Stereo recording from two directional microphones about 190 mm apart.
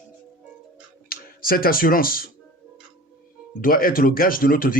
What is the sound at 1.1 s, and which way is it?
Speech, 50° left (ahead or behind).